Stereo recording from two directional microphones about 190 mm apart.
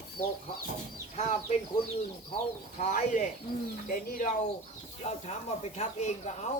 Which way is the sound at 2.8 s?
40° left (ahead or behind).